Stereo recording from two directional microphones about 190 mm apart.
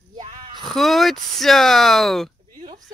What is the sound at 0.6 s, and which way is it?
Speech, centre (ahead or behind).